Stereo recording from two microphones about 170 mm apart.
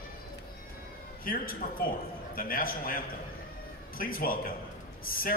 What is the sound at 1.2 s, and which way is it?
A man's voice, 55° left (ahead or behind).